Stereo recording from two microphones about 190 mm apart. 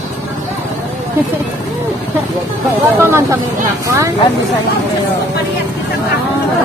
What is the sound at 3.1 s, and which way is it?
Speech, 15° right (ahead or behind).